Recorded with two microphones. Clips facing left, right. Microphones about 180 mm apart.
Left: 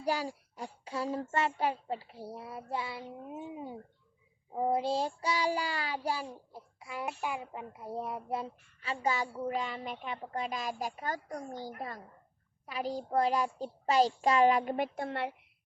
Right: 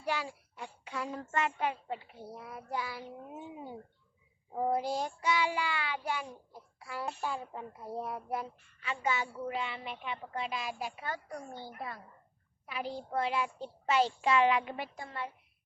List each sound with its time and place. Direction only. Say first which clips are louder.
0.0 s a child's voice: left 3 dB; 35° left (ahead or behind)
4.5 s a child's voice: left 2 dB; 20° left (ahead or behind)
6.7 s a child's voice: left 1 dB; 20° left (ahead or behind); by 14.8 s 40° left (ahead or behind)
14.9 s a woman's voice: left 6 dB; 65° left (ahead or behind)